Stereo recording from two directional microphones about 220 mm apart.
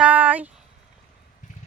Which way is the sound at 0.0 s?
5° right (ahead or behind).